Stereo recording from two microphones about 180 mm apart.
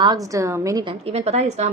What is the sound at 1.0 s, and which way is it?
Speech, 35° right (ahead or behind).